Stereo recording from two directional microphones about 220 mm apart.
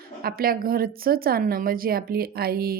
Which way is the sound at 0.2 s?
45° right (ahead or behind).